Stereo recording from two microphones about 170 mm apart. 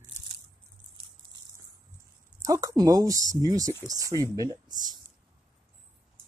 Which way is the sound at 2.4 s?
20° right (ahead or behind).